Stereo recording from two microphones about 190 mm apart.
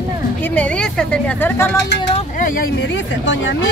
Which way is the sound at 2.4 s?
45° left (ahead or behind).